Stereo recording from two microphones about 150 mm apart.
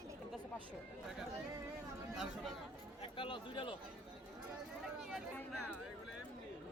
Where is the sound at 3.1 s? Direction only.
35° left (ahead or behind).